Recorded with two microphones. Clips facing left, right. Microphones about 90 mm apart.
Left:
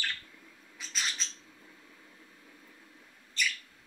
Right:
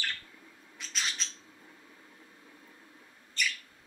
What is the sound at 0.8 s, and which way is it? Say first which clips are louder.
Bird: even; centre (ahead or behind).